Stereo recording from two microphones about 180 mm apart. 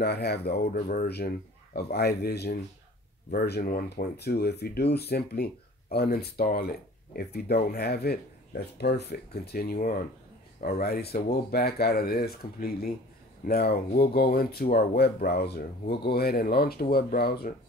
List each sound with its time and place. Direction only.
0.0 s speech: 65° left (ahead or behind)